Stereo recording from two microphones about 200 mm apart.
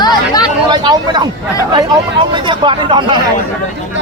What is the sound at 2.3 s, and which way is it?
Speech, 25° right (ahead or behind).